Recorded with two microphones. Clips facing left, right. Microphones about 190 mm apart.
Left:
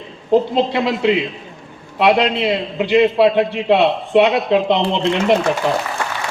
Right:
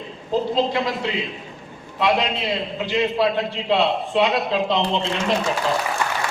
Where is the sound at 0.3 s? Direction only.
65° left (ahead or behind).